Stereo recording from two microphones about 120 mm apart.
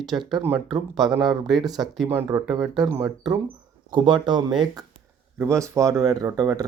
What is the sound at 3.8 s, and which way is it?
Speech, 40° right (ahead or behind).